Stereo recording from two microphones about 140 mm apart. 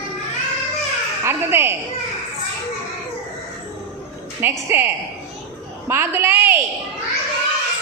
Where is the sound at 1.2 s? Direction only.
15° right (ahead or behind).